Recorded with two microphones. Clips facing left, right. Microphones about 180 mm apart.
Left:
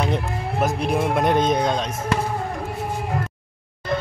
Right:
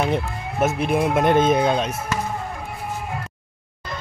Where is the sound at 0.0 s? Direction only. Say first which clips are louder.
Right 1 dB; 5° right (ahead or behind).